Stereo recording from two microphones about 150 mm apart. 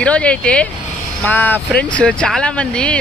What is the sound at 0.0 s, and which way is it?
Speech, 10° left (ahead or behind).